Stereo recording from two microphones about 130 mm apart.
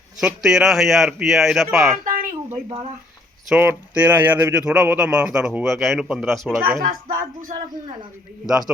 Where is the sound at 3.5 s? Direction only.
10° right (ahead or behind).